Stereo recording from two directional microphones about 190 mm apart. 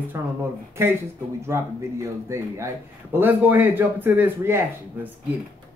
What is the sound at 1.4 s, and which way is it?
A man's voice, 15° right (ahead or behind).